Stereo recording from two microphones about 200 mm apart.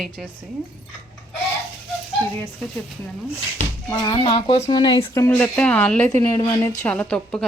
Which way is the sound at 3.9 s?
20° left (ahead or behind).